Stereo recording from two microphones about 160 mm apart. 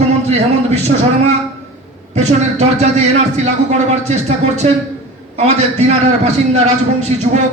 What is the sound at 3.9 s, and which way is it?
A man's voice, 45° right (ahead or behind).